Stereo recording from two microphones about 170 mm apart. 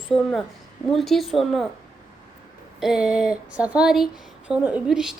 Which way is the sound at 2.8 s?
5° right (ahead or behind).